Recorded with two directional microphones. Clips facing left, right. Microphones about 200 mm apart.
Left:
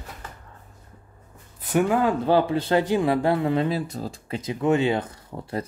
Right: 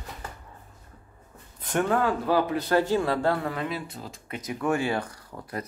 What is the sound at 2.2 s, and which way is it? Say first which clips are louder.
Speech: left 4 dB; 25° left (ahead or behind).